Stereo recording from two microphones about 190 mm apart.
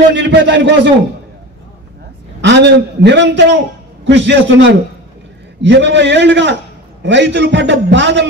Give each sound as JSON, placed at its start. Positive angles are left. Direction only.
{"t": 0.1, "sound": "a man's voice", "side_deg": -65}
{"t": 2.4, "sound": "a man's voice", "side_deg": -65}